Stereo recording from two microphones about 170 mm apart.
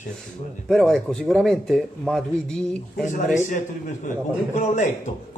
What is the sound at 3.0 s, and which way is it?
A man's voice, 45° left (ahead or behind).